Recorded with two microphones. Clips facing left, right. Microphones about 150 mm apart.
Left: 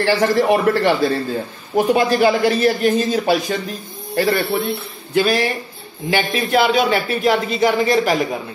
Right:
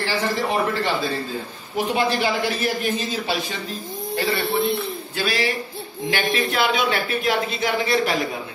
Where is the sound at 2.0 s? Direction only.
60° left (ahead or behind).